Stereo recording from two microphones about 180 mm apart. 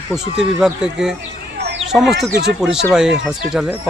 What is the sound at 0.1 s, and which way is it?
Speech, 5° right (ahead or behind).